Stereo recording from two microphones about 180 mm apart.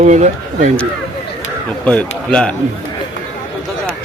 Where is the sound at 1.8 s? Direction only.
5° left (ahead or behind).